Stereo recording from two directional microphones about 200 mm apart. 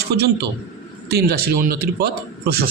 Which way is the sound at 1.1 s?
50° right (ahead or behind).